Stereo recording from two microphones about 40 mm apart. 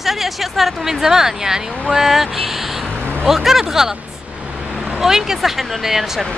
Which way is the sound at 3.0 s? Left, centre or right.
Right.